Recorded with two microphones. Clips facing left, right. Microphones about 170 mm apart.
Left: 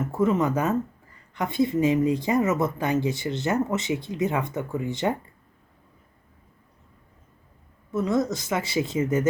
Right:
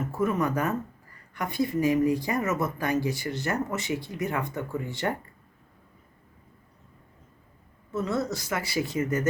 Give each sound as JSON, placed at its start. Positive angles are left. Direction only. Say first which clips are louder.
{"t": 0.0, "sound": "speech", "louder": "left 4 dB", "side_deg": 20}
{"t": 7.9, "sound": "speech", "louder": "left 4 dB", "side_deg": 15}